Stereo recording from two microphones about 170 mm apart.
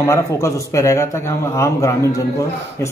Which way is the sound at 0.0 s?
15° left (ahead or behind).